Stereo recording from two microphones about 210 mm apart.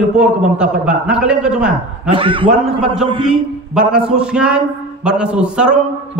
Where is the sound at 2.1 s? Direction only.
25° right (ahead or behind).